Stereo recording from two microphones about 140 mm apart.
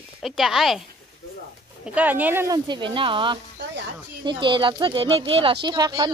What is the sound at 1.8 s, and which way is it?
Speech, 10° right (ahead or behind).